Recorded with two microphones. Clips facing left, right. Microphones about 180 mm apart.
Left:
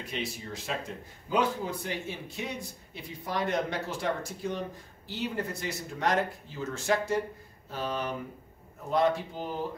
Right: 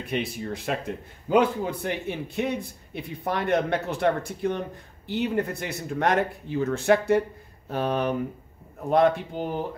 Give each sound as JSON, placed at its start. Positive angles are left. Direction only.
{"t": 0.0, "sound": "speech", "side_deg": -60}